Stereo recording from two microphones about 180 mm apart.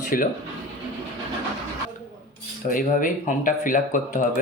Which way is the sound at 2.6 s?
50° left (ahead or behind).